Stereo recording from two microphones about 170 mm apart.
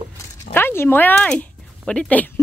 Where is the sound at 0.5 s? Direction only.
15° left (ahead or behind).